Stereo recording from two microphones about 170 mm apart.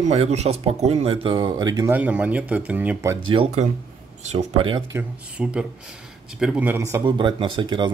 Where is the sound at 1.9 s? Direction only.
10° right (ahead or behind).